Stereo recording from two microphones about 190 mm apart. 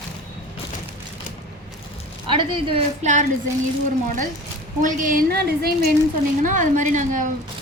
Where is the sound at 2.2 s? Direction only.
25° right (ahead or behind).